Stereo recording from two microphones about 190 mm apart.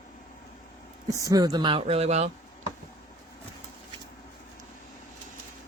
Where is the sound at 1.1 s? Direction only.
15° right (ahead or behind); by 2.3 s 35° right (ahead or behind).